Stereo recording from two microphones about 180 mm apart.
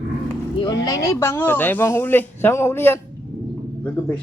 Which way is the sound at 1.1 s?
15° left (ahead or behind).